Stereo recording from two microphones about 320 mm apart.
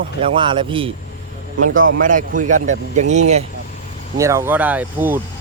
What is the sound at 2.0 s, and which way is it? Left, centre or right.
Speech, right.